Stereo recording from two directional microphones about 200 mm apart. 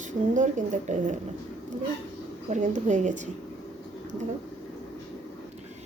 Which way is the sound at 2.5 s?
40° right (ahead or behind).